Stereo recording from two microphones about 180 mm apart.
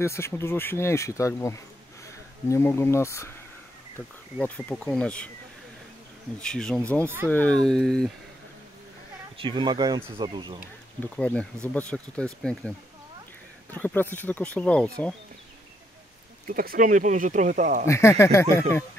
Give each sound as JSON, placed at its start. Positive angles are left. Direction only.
{"t": 0.0, "sound": "speech", "side_deg": 15}
{"t": 4.4, "sound": "speech", "side_deg": 10}
{"t": 6.4, "sound": "speech", "side_deg": 5}
{"t": 9.4, "sound": "speech", "side_deg": -25}
{"t": 11.1, "sound": "speech", "side_deg": 5}
{"t": 16.4, "sound": "speech", "side_deg": -50}
{"t": 17.8, "sound": "speech", "side_deg": 15}